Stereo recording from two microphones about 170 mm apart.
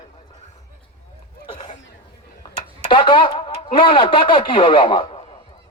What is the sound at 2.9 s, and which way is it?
A man's voice, 30° left (ahead or behind).